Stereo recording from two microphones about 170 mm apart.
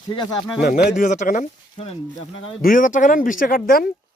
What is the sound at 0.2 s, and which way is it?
Speech, 25° left (ahead or behind).